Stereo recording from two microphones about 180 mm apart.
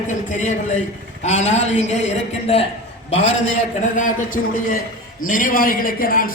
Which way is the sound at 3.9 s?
45° left (ahead or behind).